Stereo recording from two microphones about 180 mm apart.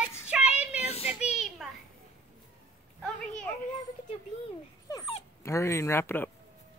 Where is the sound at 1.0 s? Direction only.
5° right (ahead or behind).